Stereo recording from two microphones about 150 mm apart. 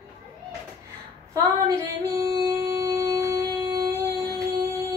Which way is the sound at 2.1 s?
25° right (ahead or behind).